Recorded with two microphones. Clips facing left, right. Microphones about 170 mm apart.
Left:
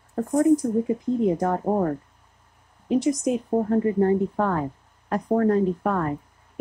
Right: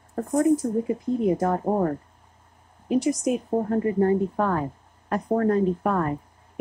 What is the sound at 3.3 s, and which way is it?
Speech, 15° right (ahead or behind).